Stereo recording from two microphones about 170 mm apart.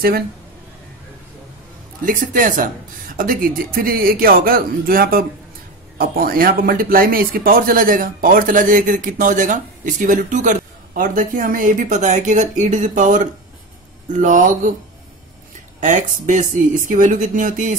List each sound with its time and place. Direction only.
2.0 s speech: 50° right (ahead or behind)
15.8 s speech: 45° right (ahead or behind)